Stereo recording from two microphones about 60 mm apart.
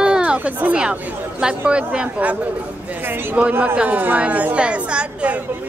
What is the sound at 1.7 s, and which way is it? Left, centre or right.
A woman's voice, centre.